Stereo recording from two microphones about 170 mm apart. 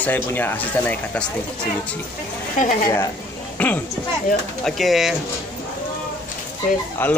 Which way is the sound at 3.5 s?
10° left (ahead or behind).